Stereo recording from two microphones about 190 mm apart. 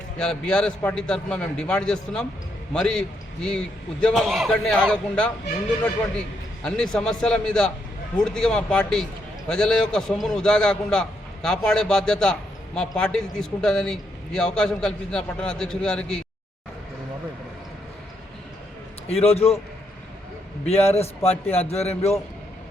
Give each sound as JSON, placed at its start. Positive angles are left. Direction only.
{"t": 0.2, "sound": "a man's voice", "side_deg": 5}
{"t": 6.7, "sound": "a man's voice", "side_deg": 5}
{"t": 19.0, "sound": "a man's voice", "side_deg": 30}
{"t": 20.7, "sound": "a man's voice", "side_deg": 35}